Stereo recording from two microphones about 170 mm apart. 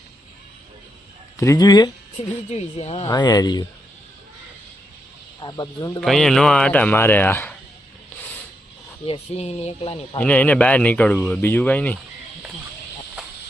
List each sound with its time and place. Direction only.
1.4 s speech: 20° left (ahead or behind)
2.7 s speech: 35° left (ahead or behind)
3.1 s speech: 25° left (ahead or behind)
5.4 s speech: 25° left (ahead or behind)
6.0 s speech: 5° left (ahead or behind)
9.0 s speech: 35° left (ahead or behind)
10.2 s speech: 10° left (ahead or behind)